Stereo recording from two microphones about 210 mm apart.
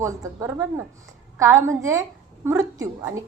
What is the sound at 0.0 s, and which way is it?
A woman's voice, 15° right (ahead or behind).